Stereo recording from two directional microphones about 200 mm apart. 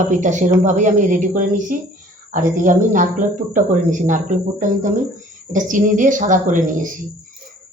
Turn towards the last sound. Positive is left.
turn(degrees=-40)  # may be behind; listen again after turning